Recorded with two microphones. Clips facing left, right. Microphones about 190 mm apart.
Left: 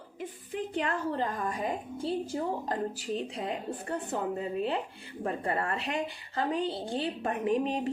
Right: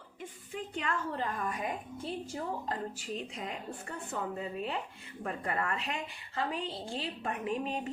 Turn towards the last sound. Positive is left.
turn(degrees=35)  # may be behind; listen again after turning